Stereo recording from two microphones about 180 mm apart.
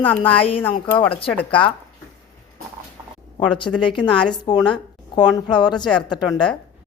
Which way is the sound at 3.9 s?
25° left (ahead or behind).